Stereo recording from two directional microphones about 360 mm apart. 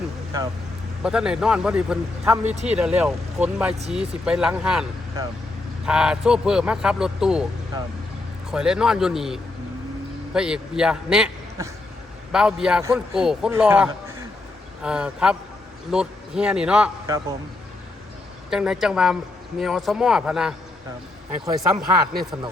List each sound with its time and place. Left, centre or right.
1.0 s a man's voice: centre
8.4 s a man's voice: centre
18.5 s a man's voice: centre
21.8 s speech: right